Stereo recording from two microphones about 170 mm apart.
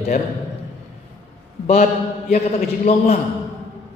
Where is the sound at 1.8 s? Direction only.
55° left (ahead or behind).